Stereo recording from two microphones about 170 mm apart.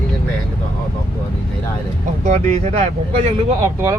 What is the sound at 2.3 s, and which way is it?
Speech, 40° right (ahead or behind).